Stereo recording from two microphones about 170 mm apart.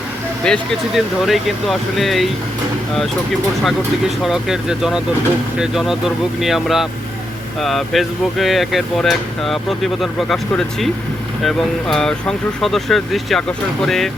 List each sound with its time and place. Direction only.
0.4 s speech: centre (ahead or behind)
4.2 s speech: centre (ahead or behind)